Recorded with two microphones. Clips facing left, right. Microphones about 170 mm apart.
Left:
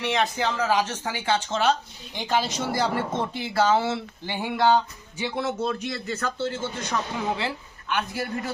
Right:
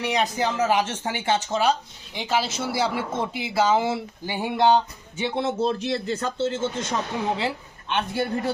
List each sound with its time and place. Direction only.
0.0 s a man's voice: 15° right (ahead or behind)
2.1 s a man's voice: 5° right (ahead or behind); by 8.5 s 30° right (ahead or behind)